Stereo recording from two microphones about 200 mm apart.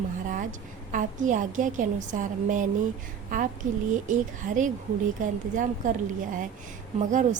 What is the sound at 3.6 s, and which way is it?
A woman's voice, 40° right (ahead or behind).